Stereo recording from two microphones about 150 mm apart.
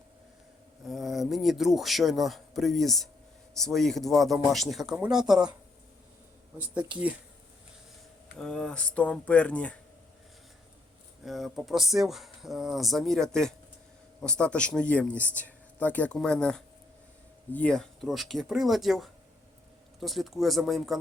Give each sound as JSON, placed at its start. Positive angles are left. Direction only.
{"t": 0.9, "sound": "speech", "side_deg": 0}
{"t": 6.6, "sound": "speech", "side_deg": -10}
{"t": 8.4, "sound": "speech", "side_deg": 5}
{"t": 11.3, "sound": "speech", "side_deg": 0}